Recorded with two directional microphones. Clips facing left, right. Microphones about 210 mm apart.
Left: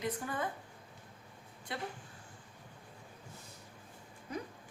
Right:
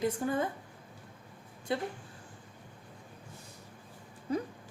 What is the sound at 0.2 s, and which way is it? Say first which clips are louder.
Speech: right 9 dB; 30° right (ahead or behind).